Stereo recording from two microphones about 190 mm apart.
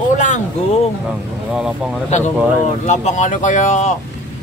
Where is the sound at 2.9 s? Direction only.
40° left (ahead or behind).